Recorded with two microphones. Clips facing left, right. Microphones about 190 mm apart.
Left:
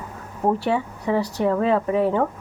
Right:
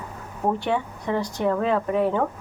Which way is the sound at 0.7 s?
5° left (ahead or behind).